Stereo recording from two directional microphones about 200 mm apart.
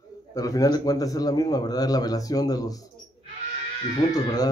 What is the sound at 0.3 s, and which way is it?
A man's voice, 15° left (ahead or behind).